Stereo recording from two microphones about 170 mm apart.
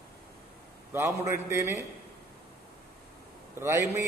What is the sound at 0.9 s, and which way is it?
Speech, 15° right (ahead or behind).